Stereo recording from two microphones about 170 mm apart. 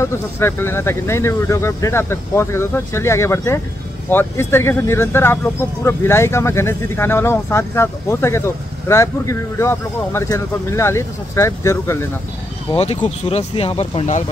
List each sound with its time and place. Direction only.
0.0 s speech: 15° left (ahead or behind)
12.7 s speech: 35° left (ahead or behind)